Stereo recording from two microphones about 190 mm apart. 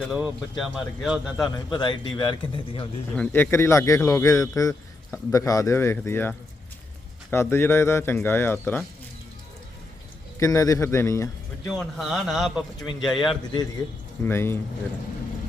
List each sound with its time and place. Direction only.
0.1 s a man's voice: 5° right (ahead or behind)
1.5 s speech: 20° left (ahead or behind)
3.1 s speech: 10° left (ahead or behind)
10.4 s speech: 15° left (ahead or behind)
11.8 s a man's voice: centre (ahead or behind)
14.3 s speech: 10° left (ahead or behind)